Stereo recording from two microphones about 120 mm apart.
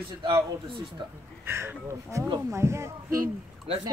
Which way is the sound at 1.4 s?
20° right (ahead or behind).